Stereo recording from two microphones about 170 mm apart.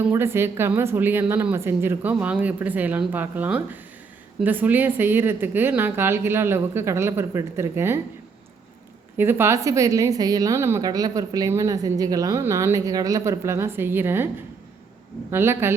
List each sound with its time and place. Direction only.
0.0 s a woman's voice: 15° right (ahead or behind)
9.1 s a woman's voice: 15° right (ahead or behind)
15.3 s a woman's voice: 15° right (ahead or behind)